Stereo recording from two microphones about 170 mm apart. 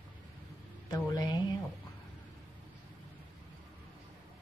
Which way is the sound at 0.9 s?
25° left (ahead or behind).